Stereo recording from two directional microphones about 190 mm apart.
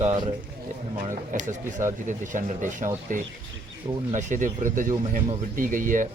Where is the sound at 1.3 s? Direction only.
40° right (ahead or behind).